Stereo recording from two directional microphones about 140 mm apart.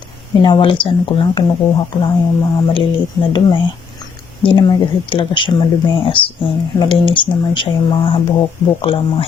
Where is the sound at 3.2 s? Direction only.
25° left (ahead or behind).